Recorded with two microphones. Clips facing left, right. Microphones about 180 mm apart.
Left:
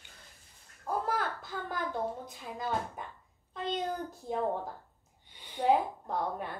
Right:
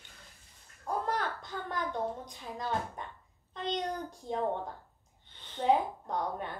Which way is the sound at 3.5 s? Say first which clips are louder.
Even; 5° left (ahead or behind).